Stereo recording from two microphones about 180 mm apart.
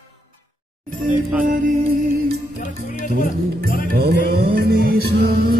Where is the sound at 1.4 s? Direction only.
50° right (ahead or behind).